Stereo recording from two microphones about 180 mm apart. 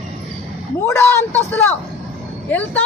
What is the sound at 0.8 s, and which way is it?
Speech, 10° left (ahead or behind).